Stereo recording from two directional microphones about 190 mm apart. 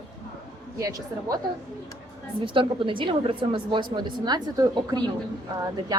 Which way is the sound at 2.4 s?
25° right (ahead or behind).